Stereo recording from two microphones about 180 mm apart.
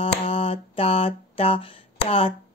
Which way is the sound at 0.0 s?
35° left (ahead or behind).